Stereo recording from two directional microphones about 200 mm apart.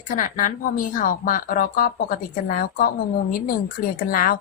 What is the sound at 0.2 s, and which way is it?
A woman's voice, 40° left (ahead or behind).